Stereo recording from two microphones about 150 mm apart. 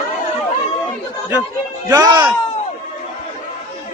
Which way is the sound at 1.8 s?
25° right (ahead or behind).